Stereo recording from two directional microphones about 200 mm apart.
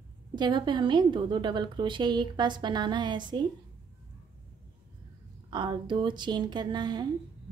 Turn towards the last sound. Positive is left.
turn(degrees=-20)  # may be behind; listen again after turning